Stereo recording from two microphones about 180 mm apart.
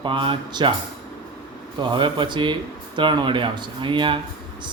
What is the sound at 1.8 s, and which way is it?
Mantra, 25° right (ahead or behind).